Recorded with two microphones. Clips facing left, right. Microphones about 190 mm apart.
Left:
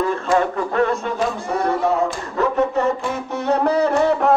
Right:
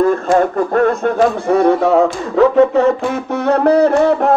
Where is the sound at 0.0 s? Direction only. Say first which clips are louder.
Right 6 dB; 45° right (ahead or behind); by 2.9 s 90° right.